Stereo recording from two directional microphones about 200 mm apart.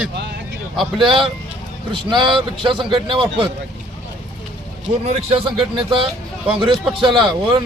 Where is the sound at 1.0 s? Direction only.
25° right (ahead or behind).